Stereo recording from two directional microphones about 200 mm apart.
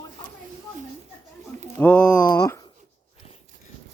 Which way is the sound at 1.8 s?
10° left (ahead or behind).